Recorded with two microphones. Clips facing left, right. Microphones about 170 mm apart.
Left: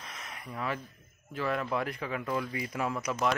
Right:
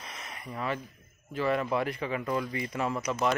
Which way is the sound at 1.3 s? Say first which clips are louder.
Right 3 dB; centre (ahead or behind).